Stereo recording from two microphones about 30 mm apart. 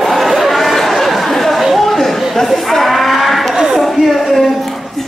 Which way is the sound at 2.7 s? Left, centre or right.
Centre.